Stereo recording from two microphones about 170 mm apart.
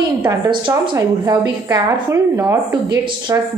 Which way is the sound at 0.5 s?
25° right (ahead or behind).